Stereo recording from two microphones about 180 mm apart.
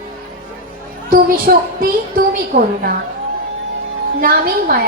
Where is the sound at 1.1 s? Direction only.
55° right (ahead or behind).